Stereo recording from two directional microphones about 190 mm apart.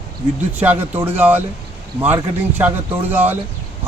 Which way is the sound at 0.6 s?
10° right (ahead or behind).